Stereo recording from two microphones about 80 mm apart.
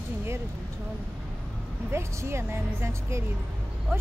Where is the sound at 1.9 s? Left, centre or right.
Right.